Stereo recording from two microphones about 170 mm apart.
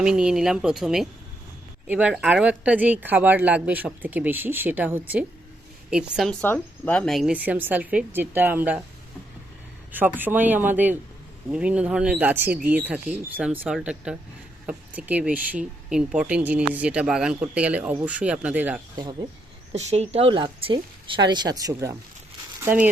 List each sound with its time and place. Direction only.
0.0 s speech: 5° right (ahead or behind)
6.4 s speech: 10° left (ahead or behind); by 8.8 s 10° right (ahead or behind)
9.9 s speech: 10° right (ahead or behind)
19.7 s speech: 40° right (ahead or behind); by 22.9 s 10° right (ahead or behind)